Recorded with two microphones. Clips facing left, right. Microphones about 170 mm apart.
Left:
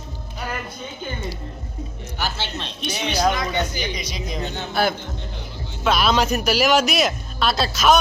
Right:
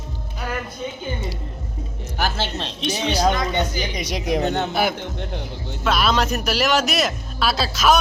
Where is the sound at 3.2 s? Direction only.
25° right (ahead or behind).